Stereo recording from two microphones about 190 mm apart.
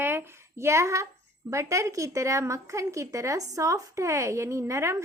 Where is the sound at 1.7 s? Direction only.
15° right (ahead or behind).